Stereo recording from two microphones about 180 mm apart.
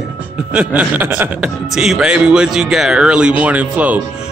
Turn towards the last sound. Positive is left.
turn(degrees=-10)  # may be behind; listen again after turning